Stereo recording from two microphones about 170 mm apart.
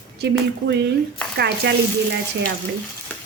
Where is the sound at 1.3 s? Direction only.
75° right (ahead or behind).